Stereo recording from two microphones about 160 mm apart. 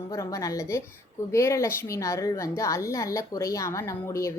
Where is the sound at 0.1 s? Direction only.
20° left (ahead or behind).